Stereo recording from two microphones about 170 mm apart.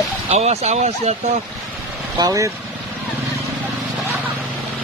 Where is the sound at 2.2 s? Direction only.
20° right (ahead or behind).